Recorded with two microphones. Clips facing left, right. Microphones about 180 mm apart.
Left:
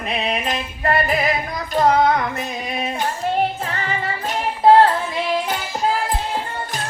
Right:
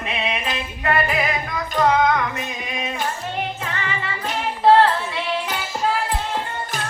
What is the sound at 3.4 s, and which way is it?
Music, 35° left (ahead or behind).